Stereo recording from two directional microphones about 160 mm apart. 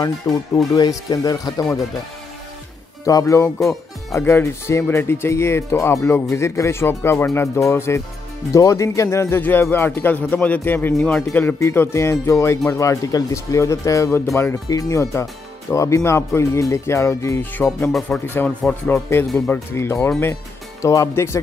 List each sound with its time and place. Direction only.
0.3 s speech: centre (ahead or behind)
0.7 s speech: 25° left (ahead or behind)
3.1 s speech: 20° left (ahead or behind)
3.4 s speech: centre (ahead or behind)
4.1 s speech: 15° left (ahead or behind)